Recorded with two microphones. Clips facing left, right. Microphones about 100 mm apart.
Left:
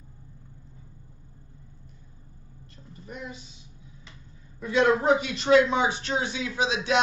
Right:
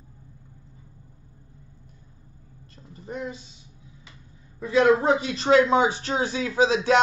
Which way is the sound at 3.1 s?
35° right (ahead or behind).